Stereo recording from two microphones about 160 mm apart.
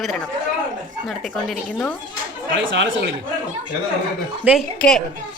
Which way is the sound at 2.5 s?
90° right.